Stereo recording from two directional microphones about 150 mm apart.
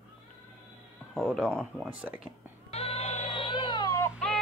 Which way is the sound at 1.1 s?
5° right (ahead or behind).